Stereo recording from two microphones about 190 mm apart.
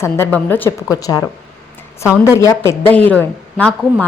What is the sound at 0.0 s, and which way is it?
A woman's voice, 10° left (ahead or behind).